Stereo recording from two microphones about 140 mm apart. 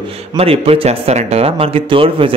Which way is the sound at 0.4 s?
45° right (ahead or behind).